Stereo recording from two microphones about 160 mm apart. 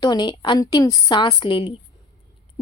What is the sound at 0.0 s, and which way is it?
A woman's voice, 25° left (ahead or behind).